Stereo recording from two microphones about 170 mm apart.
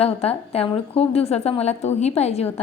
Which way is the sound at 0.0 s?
35° left (ahead or behind).